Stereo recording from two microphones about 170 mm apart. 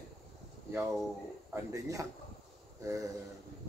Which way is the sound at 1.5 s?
20° right (ahead or behind).